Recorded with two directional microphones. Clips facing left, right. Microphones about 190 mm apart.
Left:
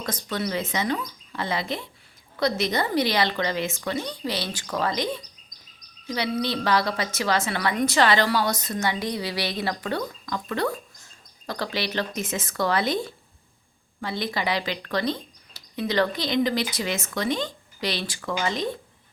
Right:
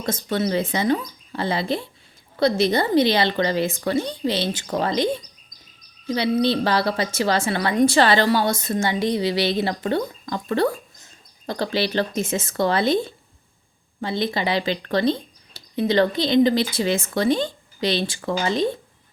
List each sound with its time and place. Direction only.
0.0 s speech: 25° right (ahead or behind)